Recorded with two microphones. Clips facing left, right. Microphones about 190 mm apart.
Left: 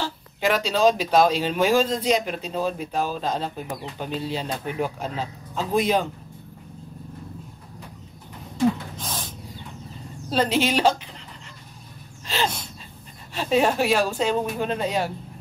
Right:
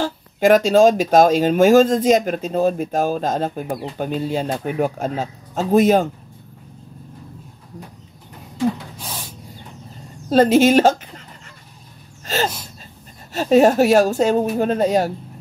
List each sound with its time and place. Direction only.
0.0 s speech: 45° right (ahead or behind)
9.0 s gasp: 15° right (ahead or behind)
10.3 s speech: 45° right (ahead or behind)
12.3 s gasp: 45° right (ahead or behind)
13.3 s speech: 45° right (ahead or behind)